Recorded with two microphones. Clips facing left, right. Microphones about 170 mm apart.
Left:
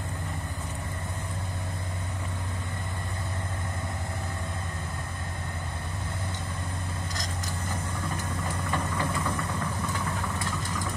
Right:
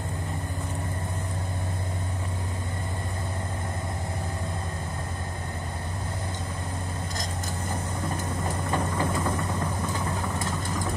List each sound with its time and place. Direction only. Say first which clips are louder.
8.5 s vehicle: right 3 dB; 30° right (ahead or behind)